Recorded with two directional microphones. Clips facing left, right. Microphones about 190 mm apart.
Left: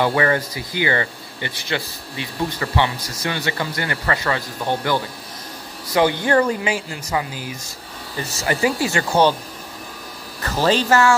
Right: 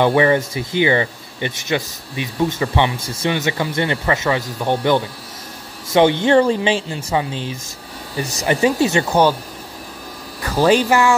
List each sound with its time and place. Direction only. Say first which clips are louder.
0.0 s speech: right 4 dB; 20° right (ahead or behind)
10.4 s speech: right 4 dB; 10° right (ahead or behind)